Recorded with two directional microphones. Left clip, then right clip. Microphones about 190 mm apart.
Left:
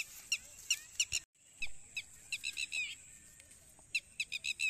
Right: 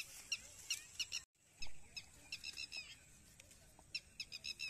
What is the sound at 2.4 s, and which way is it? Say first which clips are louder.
Bird: left 9 dB; 45° right (ahead or behind).